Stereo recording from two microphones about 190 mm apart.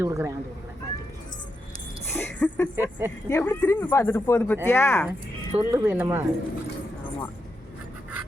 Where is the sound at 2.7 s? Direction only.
10° right (ahead or behind).